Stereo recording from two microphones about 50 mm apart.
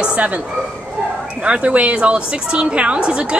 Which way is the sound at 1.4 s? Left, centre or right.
Right.